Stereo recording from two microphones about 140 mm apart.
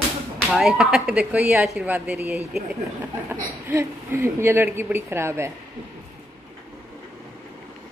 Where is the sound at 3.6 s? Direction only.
20° right (ahead or behind).